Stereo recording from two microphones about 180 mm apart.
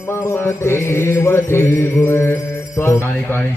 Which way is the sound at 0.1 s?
15° left (ahead or behind).